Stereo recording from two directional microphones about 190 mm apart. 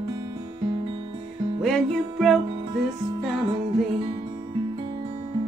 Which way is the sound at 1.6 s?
Centre (ahead or behind).